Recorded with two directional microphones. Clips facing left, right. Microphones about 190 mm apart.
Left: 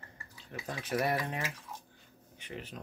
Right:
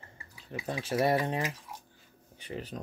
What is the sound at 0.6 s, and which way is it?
Speech, 25° right (ahead or behind).